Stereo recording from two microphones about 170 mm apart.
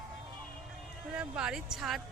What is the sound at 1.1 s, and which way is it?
Speech, 5° right (ahead or behind).